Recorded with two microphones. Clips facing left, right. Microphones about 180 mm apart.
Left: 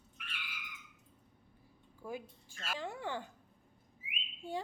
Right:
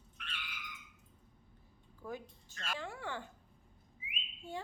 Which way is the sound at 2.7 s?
20° left (ahead or behind).